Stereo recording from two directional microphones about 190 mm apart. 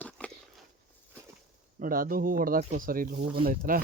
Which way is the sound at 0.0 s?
5° left (ahead or behind).